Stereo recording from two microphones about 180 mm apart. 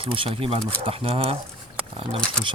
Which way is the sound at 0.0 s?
30° right (ahead or behind).